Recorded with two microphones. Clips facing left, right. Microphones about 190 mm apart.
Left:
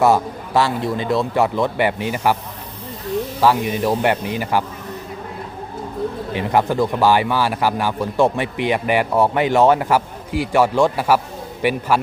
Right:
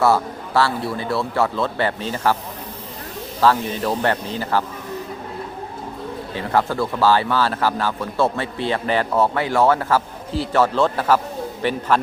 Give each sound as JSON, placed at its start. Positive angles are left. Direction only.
{"t": 0.0, "sound": "speech", "side_deg": 15}
{"t": 3.4, "sound": "speech", "side_deg": 15}
{"t": 6.3, "sound": "speech", "side_deg": 15}